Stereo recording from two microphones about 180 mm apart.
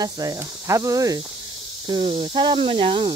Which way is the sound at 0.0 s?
20° right (ahead or behind).